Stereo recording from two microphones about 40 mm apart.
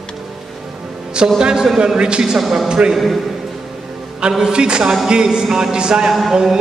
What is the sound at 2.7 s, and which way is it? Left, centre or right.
Speech, centre.